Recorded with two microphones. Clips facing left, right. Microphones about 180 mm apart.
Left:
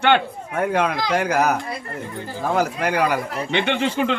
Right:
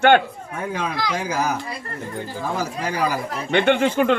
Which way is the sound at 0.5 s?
65° left (ahead or behind).